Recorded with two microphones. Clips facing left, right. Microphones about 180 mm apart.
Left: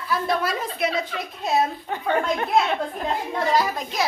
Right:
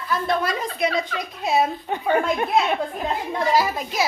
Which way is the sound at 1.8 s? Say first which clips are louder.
Right 2 dB; 15° right (ahead or behind).